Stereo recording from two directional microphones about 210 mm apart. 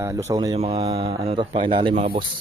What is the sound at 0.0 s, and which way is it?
Speech, 15° right (ahead or behind).